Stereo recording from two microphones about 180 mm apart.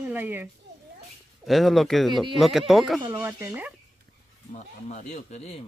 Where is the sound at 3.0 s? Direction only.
15° right (ahead or behind).